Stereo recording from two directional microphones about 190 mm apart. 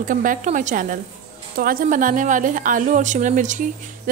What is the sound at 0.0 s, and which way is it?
Speech, 45° right (ahead or behind).